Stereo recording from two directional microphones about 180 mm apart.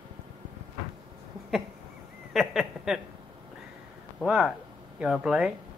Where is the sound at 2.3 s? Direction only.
Centre (ahead or behind).